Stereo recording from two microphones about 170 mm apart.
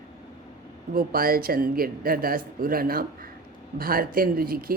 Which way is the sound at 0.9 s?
60° right (ahead or behind).